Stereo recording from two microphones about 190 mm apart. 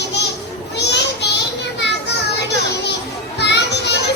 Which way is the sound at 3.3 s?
65° left (ahead or behind).